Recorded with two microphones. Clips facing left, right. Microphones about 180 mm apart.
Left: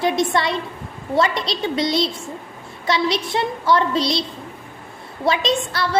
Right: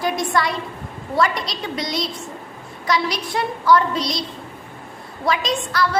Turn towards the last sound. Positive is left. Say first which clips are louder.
# left 1 dB
turn(degrees=25)  # may be behind; listen again after turning